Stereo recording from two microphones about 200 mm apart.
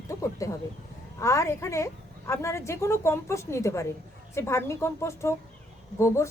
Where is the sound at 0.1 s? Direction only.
15° left (ahead or behind).